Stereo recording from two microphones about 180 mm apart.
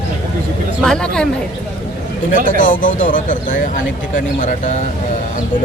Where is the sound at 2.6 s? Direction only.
45° left (ahead or behind).